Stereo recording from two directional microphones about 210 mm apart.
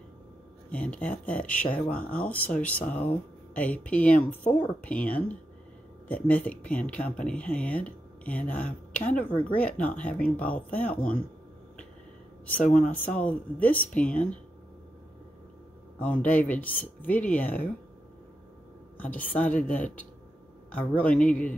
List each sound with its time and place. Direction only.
0.7 s speech: 5° left (ahead or behind)
12.7 s speech: 40° left (ahead or behind)
13.1 s speech: 5° left (ahead or behind)
16.0 s speech: 10° left (ahead or behind)
18.9 s speech: 10° left (ahead or behind)